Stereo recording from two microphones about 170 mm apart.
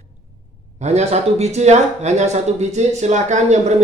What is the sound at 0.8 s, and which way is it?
Speech, 40° right (ahead or behind).